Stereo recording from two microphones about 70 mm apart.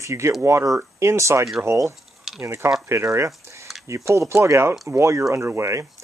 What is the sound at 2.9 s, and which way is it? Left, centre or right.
Speech, right.